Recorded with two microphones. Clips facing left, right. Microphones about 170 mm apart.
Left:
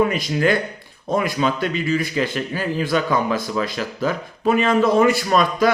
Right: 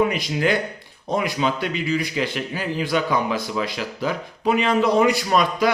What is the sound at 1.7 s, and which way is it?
Speech, 15° right (ahead or behind).